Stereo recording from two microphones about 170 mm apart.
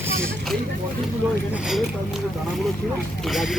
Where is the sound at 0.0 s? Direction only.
15° right (ahead or behind).